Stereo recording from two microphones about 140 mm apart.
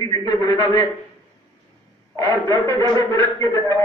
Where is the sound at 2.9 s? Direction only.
25° left (ahead or behind).